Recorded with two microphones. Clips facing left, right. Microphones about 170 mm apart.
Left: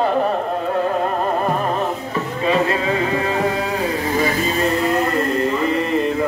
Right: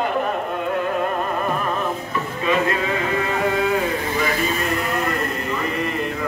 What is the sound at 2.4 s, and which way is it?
Music, 30° left (ahead or behind).